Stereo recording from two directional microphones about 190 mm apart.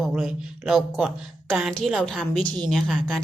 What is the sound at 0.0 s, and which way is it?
A woman's voice, centre (ahead or behind).